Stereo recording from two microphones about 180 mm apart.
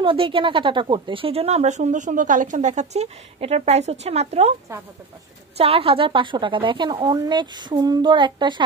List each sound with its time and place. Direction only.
0.0 s speech: 30° right (ahead or behind)
5.6 s a woman's voice: 30° right (ahead or behind)